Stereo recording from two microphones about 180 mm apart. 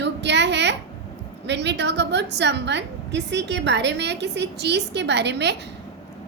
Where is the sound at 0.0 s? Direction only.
75° right (ahead or behind).